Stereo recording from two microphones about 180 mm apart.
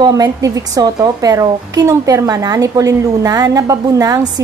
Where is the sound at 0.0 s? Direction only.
20° right (ahead or behind).